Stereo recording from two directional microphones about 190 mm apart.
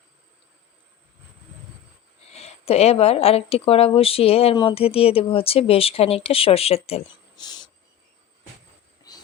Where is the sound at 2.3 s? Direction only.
35° left (ahead or behind).